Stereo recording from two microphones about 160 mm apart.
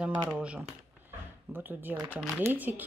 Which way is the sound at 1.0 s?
10° right (ahead or behind).